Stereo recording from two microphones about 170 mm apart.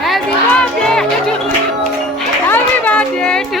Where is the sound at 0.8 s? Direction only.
5° left (ahead or behind).